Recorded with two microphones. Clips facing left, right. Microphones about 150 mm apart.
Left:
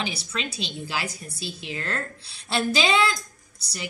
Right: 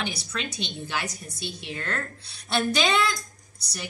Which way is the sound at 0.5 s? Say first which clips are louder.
Left 1 dB; 35° left (ahead or behind).